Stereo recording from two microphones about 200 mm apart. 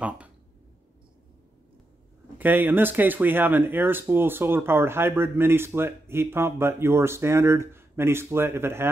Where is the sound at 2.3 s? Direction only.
10° right (ahead or behind).